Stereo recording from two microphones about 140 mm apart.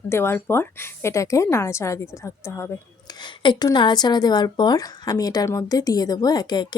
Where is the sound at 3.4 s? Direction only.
30° left (ahead or behind).